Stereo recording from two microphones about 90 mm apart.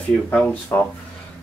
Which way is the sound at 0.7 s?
20° left (ahead or behind).